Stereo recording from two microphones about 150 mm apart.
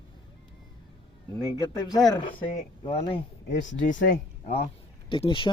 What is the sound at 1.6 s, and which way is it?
Speech, 25° left (ahead or behind).